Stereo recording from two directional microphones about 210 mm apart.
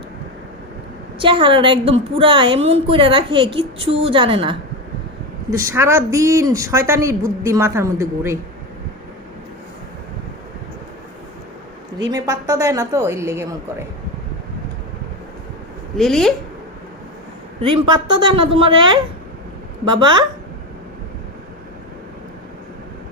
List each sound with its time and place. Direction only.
1.2 s a woman's voice: 25° right (ahead or behind)
12.1 s speech: 15° right (ahead or behind)
16.0 s a woman's voice: centre (ahead or behind)
17.6 s a woman's voice: 25° right (ahead or behind)
19.9 s a woman's voice: 20° right (ahead or behind)